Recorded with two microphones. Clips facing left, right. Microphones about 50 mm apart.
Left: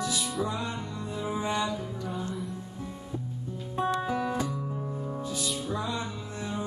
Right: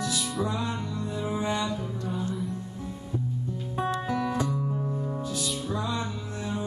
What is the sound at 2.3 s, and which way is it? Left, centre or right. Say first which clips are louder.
Music: right 3 dB; centre.